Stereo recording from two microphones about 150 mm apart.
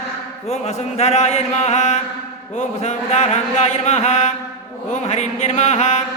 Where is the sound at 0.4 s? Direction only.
45° left (ahead or behind).